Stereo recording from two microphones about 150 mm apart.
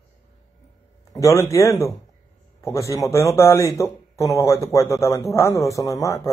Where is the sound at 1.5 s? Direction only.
20° left (ahead or behind).